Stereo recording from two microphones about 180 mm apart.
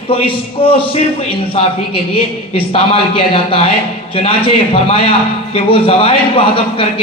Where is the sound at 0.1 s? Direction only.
30° left (ahead or behind).